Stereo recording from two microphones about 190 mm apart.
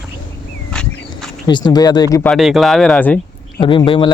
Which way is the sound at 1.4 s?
20° left (ahead or behind).